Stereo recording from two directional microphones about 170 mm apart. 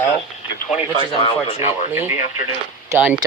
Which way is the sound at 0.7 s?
35° left (ahead or behind).